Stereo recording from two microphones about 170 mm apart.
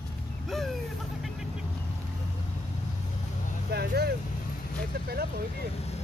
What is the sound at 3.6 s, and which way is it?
Vehicle, 70° right (ahead or behind).